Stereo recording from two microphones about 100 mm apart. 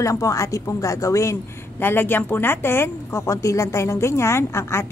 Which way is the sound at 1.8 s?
20° left (ahead or behind).